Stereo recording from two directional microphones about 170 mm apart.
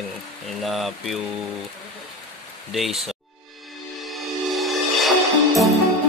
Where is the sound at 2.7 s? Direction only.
Centre (ahead or behind).